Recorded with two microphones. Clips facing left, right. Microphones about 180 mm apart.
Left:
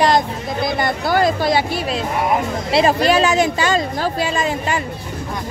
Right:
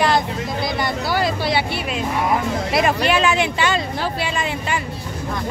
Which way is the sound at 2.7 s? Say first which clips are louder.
Left 5 dB; 35° left (ahead or behind).